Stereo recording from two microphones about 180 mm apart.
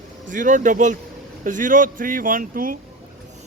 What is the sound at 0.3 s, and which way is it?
Speech, 45° right (ahead or behind).